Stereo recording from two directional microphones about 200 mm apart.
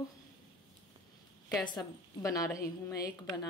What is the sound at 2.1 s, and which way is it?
A woman's voice, 15° left (ahead or behind).